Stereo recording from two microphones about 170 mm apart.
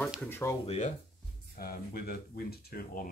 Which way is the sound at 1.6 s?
60° left (ahead or behind).